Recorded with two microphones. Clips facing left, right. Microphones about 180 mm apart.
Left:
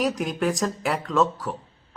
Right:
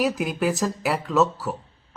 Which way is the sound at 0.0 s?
5° right (ahead or behind).